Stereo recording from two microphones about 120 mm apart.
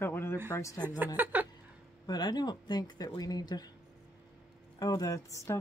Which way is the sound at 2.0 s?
35° left (ahead or behind).